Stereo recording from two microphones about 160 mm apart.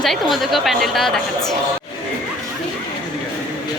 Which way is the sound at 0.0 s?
Centre (ahead or behind).